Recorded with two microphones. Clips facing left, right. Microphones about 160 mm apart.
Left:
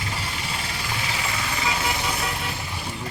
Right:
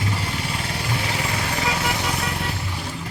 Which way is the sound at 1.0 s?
55° right (ahead or behind).